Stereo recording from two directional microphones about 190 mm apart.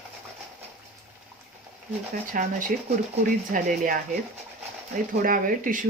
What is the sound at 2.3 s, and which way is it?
Speech, 45° right (ahead or behind).